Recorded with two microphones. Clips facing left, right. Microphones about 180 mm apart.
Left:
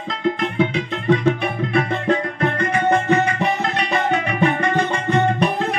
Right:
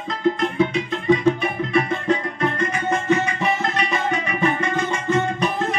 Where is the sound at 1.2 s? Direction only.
60° left (ahead or behind).